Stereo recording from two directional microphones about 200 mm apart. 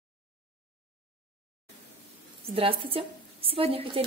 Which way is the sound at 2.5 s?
30° right (ahead or behind).